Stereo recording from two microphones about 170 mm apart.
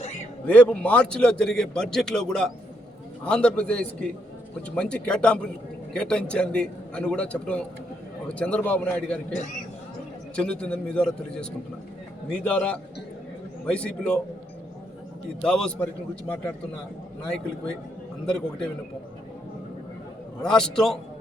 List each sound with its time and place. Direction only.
0.4 s a man's voice: 5° left (ahead or behind)
9.3 s speech: 45° left (ahead or behind)
10.3 s a man's voice: 5° left (ahead or behind)
15.4 s a man's voice: 5° left (ahead or behind)
17.2 s a man's voice: 5° left (ahead or behind)
20.4 s a man's voice: 5° left (ahead or behind)